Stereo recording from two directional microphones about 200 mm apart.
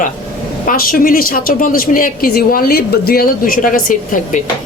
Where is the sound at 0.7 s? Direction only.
45° left (ahead or behind).